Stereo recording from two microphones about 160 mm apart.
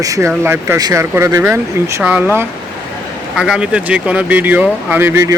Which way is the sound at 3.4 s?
5° right (ahead or behind).